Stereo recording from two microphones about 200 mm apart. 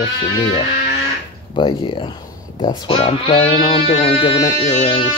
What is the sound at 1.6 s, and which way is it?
Speech, 25° left (ahead or behind).